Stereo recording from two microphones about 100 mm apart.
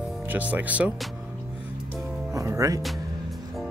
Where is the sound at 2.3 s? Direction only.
30° right (ahead or behind).